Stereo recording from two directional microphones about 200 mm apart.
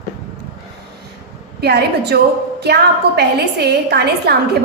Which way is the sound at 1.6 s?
55° right (ahead or behind).